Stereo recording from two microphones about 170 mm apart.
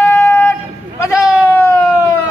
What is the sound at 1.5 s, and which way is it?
Emergency vehicle, 15° left (ahead or behind).